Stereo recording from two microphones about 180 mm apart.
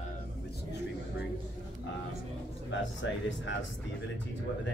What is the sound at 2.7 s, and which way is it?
Speech, 90° left.